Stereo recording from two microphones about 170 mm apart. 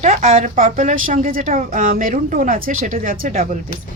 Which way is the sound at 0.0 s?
40° right (ahead or behind).